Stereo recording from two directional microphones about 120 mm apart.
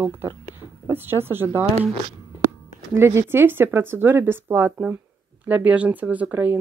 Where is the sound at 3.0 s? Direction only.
20° right (ahead or behind).